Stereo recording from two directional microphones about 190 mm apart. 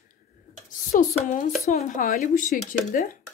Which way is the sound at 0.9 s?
40° left (ahead or behind).